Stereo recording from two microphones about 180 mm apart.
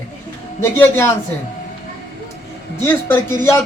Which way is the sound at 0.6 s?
15° left (ahead or behind).